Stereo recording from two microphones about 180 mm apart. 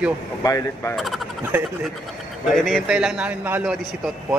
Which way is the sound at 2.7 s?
Centre (ahead or behind).